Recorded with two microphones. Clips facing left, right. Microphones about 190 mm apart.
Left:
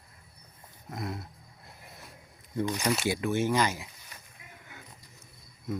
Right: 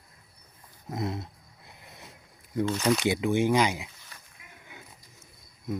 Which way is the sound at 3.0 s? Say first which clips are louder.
Right 3 dB; 15° right (ahead or behind).